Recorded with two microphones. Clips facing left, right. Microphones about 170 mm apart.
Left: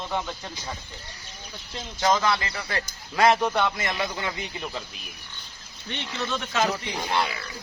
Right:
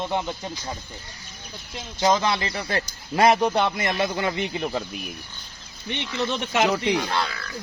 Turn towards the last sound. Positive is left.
turn(degrees=20)  # may be behind; listen again after turning